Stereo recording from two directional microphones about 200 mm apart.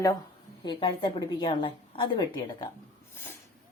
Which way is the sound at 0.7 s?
25° left (ahead or behind).